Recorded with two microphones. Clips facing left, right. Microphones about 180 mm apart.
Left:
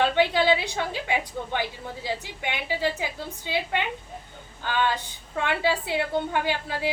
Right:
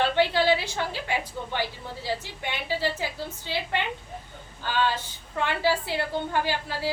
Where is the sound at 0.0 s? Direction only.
15° left (ahead or behind).